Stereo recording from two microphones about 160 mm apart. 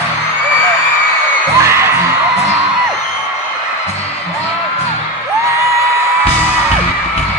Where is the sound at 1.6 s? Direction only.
15° right (ahead or behind).